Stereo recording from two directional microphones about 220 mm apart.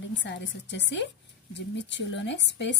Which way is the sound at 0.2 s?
55° left (ahead or behind).